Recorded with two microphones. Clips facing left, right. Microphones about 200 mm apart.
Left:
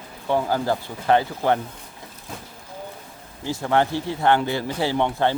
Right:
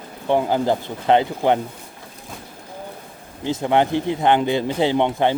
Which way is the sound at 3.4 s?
20° right (ahead or behind).